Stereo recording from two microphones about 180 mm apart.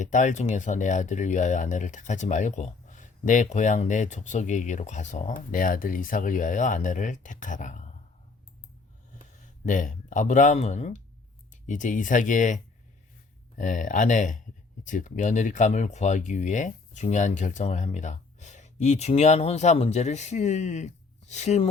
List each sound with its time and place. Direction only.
0.0 s speech: 45° left (ahead or behind)
9.4 s speech: 45° left (ahead or behind)
13.6 s speech: 45° left (ahead or behind)